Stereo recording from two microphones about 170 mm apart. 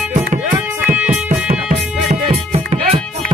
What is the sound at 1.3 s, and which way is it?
Music, 40° right (ahead or behind).